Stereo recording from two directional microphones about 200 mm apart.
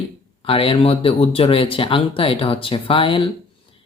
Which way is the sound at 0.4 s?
30° left (ahead or behind).